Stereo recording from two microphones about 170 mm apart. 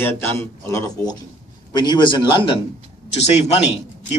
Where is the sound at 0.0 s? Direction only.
15° left (ahead or behind); by 2.5 s 30° left (ahead or behind).